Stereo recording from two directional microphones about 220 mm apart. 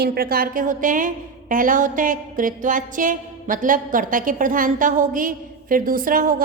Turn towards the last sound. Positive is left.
turn(degrees=-40)  # may be behind; listen again after turning